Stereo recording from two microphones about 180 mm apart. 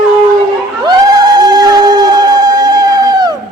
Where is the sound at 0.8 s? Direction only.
20° right (ahead or behind).